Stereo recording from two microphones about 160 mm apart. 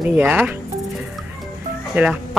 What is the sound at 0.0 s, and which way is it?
Speech, 10° right (ahead or behind).